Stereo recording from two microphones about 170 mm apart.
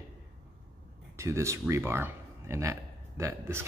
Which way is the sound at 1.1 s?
15° right (ahead or behind).